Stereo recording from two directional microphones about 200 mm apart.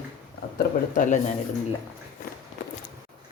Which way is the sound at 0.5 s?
40° left (ahead or behind).